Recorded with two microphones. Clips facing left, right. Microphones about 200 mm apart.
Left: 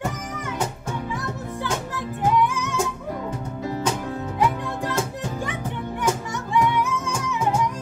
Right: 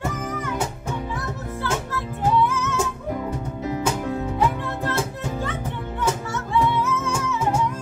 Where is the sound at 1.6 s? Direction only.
15° left (ahead or behind).